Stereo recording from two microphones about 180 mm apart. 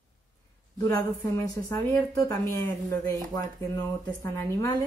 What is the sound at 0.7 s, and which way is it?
A woman's voice, 20° left (ahead or behind).